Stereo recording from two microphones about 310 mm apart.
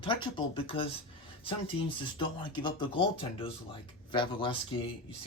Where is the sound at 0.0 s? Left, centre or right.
Centre.